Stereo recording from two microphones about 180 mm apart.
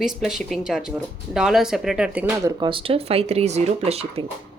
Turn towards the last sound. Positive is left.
turn(degrees=-35)  # may be behind; listen again after turning